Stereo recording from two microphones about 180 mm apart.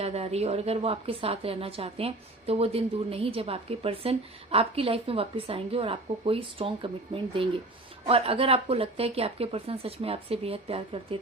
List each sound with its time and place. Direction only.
0.0 s a woman's voice: 35° right (ahead or behind)